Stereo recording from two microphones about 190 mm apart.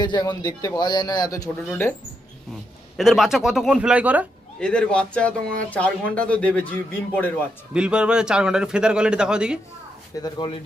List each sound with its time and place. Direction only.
0.0 s a man's voice: 20° left (ahead or behind)
1.5 s a man's voice: 5° left (ahead or behind)
3.0 s a man's voice: centre (ahead or behind)
4.6 s speech: 5° left (ahead or behind)
7.7 s a man's voice: 5° right (ahead or behind)
10.2 s a man's voice: 20° left (ahead or behind)